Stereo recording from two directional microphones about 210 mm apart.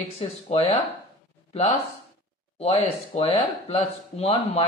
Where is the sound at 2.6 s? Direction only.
30° left (ahead or behind).